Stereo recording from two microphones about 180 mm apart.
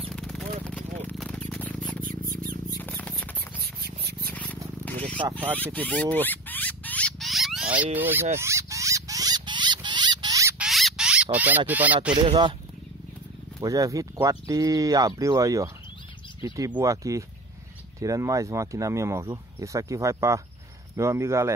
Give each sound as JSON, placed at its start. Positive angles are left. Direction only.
{"t": 0.1, "sound": "a sound", "side_deg": 0}
{"t": 2.7, "sound": "rodents", "side_deg": 10}
{"t": 3.6, "sound": "a sound", "side_deg": -60}
{"t": 4.3, "sound": "scrape", "side_deg": 10}
{"t": 4.8, "sound": "purr", "side_deg": 5}
{"t": 5.6, "sound": "a sound", "side_deg": 10}
{"t": 7.8, "sound": "speech", "side_deg": -10}
{"t": 8.4, "sound": "rodents", "side_deg": -15}
{"t": 10.6, "sound": "a sound", "side_deg": 0}
{"t": 11.3, "sound": "speech", "side_deg": -10}
{"t": 12.1, "sound": "speech", "side_deg": -25}
{"t": 13.6, "sound": "speech", "side_deg": -20}